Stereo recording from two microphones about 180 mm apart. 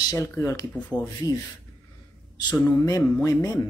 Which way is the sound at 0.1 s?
15° left (ahead or behind).